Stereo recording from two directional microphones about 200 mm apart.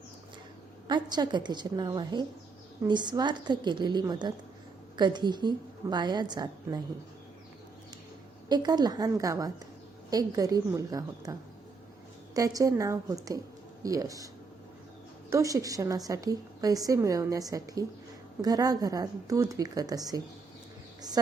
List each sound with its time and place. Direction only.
0.9 s a woman's voice: 20° right (ahead or behind)
8.4 s a woman's voice: 20° right (ahead or behind)
15.3 s a woman's voice: 15° right (ahead or behind)